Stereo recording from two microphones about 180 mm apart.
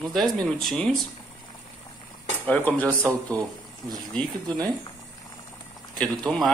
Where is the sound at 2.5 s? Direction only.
10° left (ahead or behind).